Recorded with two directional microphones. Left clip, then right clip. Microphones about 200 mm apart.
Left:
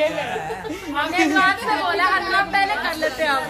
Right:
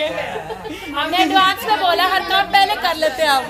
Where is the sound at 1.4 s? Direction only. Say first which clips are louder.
Right 3 dB; 40° right (ahead or behind).